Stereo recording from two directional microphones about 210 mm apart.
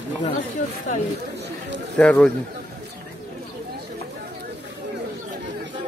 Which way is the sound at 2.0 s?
5° left (ahead or behind).